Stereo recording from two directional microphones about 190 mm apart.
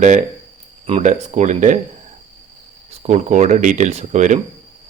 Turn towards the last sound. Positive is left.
turn(degrees=-40)  # may be behind; listen again after turning